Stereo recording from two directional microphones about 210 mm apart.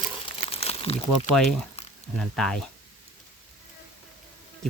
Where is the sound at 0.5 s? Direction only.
30° left (ahead or behind).